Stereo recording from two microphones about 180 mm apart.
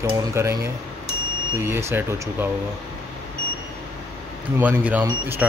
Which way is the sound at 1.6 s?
15° right (ahead or behind).